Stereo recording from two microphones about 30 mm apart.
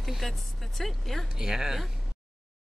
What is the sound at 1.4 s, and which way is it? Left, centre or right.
Speech, centre.